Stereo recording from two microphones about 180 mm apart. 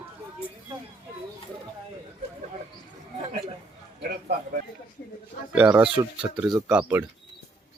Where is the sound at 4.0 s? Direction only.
60° right (ahead or behind).